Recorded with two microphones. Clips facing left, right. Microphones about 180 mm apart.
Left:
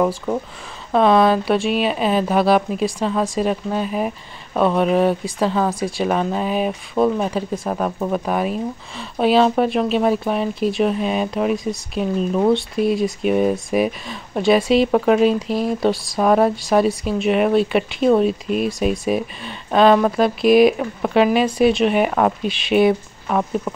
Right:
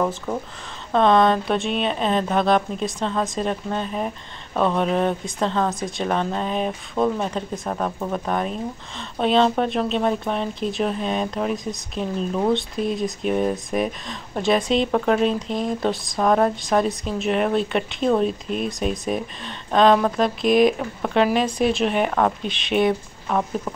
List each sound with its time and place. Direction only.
0.9 s speech: 5° left (ahead or behind)
15.9 s speech: 20° right (ahead or behind)
16.2 s speech: 5° left (ahead or behind)